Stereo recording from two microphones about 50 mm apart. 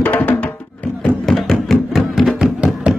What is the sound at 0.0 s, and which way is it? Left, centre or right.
Music, left.